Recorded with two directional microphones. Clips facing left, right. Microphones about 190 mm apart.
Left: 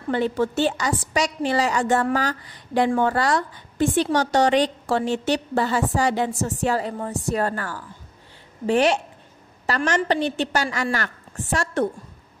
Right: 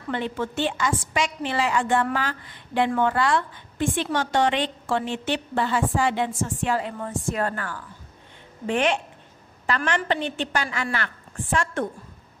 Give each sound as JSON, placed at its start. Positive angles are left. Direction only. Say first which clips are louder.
{"t": 0.1, "sound": "a woman's voice", "louder": "left 6 dB", "side_deg": 40}